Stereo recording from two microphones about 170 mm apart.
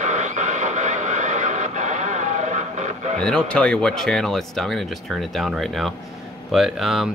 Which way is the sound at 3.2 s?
5° left (ahead or behind).